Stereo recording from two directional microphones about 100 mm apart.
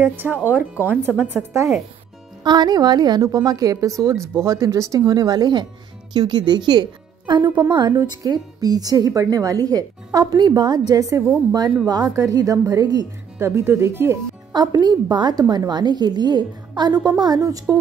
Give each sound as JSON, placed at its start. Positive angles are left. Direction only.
{"t": 0.0, "sound": "a woman's voice", "side_deg": -20}
{"t": 2.4, "sound": "a woman's voice", "side_deg": -45}
{"t": 7.9, "sound": "a woman's voice", "side_deg": -35}
{"t": 13.4, "sound": "a woman's voice", "side_deg": -25}
{"t": 14.5, "sound": "a woman's voice", "side_deg": -45}